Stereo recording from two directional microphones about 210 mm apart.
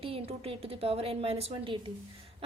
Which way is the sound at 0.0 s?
30° right (ahead or behind).